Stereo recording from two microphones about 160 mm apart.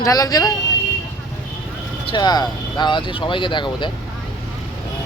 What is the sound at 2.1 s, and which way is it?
Speech, 25° left (ahead or behind).